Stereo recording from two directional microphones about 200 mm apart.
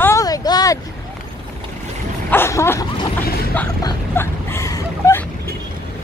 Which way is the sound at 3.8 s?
15° left (ahead or behind).